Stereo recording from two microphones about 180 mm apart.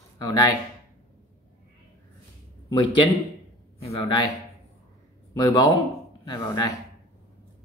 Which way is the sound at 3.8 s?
25° left (ahead or behind).